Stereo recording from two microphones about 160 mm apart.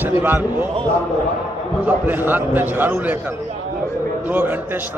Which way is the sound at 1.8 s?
10° right (ahead or behind).